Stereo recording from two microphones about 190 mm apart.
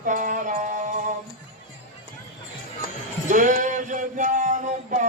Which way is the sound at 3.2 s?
40° right (ahead or behind).